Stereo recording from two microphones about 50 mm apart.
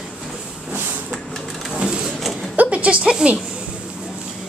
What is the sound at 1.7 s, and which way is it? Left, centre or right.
Printer, centre.